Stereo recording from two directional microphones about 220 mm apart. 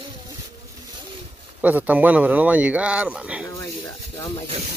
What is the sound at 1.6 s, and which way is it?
Speech, 5° right (ahead or behind).